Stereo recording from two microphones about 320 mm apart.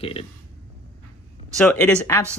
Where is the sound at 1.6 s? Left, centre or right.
Centre.